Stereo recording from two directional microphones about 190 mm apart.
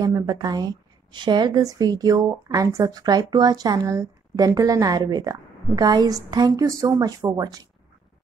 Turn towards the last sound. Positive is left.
turn(degrees=-20)  # may be behind; listen again after turning